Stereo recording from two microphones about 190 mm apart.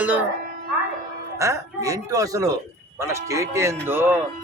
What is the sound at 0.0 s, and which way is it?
Speech, 10° right (ahead or behind).